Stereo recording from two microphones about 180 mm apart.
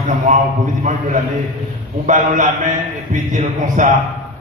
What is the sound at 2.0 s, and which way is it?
Speech, 45° right (ahead or behind).